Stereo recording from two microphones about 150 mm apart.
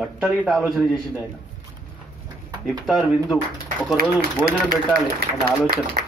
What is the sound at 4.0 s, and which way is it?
Speech, 80° right.